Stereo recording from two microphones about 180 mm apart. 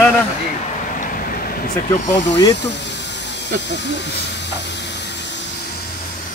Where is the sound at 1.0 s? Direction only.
50° left (ahead or behind).